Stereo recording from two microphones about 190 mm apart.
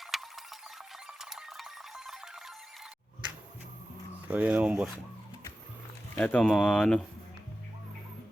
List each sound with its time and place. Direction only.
0.0 s a sound: centre (ahead or behind)
4.3 s speech: 10° right (ahead or behind)
6.1 s speech: 5° left (ahead or behind)